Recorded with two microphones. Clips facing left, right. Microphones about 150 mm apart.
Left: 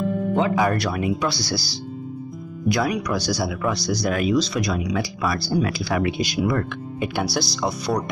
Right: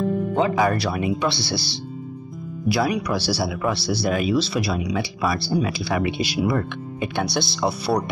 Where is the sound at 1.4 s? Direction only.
25° right (ahead or behind).